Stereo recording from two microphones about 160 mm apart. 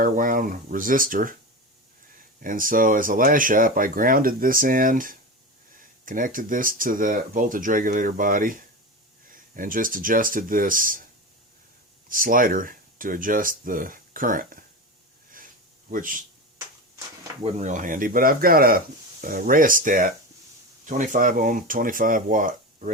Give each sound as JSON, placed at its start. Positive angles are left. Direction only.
{"t": 0.0, "sound": "speech", "side_deg": -60}
{"t": 2.4, "sound": "speech", "side_deg": -60}
{"t": 12.0, "sound": "speech", "side_deg": -60}
{"t": 15.9, "sound": "speech", "side_deg": -60}
{"t": 17.4, "sound": "speech", "side_deg": -50}